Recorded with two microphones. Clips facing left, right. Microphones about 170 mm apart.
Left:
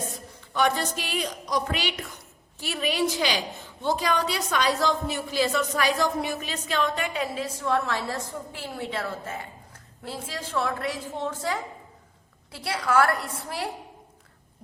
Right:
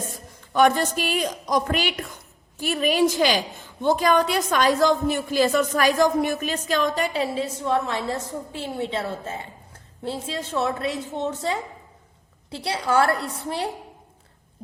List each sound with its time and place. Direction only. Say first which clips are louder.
0.5 s a woman's voice: right 6 dB; 50° right (ahead or behind); by 13.7 s 25° right (ahead or behind)